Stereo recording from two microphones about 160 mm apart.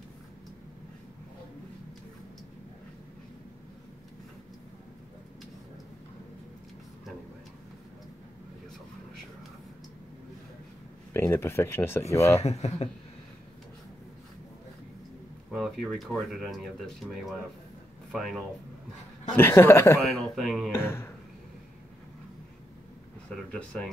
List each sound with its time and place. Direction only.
11.1 s speech: 15° left (ahead or behind)
12.4 s speech: 40° left (ahead or behind)
15.5 s speech: centre (ahead or behind)
18.1 s speech: centre (ahead or behind)
19.3 s speech: 15° left (ahead or behind)
20.2 s speech: centre (ahead or behind)
20.7 s a sound: 15° left (ahead or behind)
23.3 s speech: 5° left (ahead or behind)